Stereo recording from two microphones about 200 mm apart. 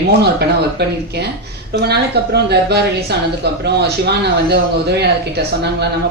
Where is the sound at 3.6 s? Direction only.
55° right (ahead or behind).